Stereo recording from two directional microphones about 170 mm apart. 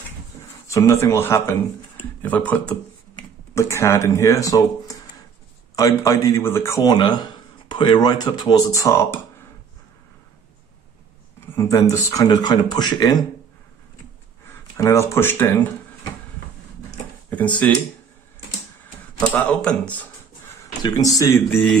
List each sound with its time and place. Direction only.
0.7 s a man's voice: 20° left (ahead or behind)
11.5 s a man's voice: 20° left (ahead or behind)
14.5 s speech: 15° left (ahead or behind)
17.3 s speech: 10° left (ahead or behind)
19.3 s speech: 5° left (ahead or behind)
20.8 s a man's voice: 20° left (ahead or behind)